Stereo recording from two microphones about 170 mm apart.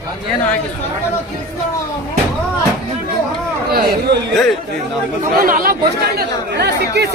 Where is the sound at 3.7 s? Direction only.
65° right (ahead or behind).